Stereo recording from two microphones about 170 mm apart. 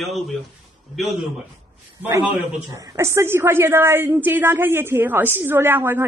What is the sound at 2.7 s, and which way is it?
A woman's voice, 15° right (ahead or behind).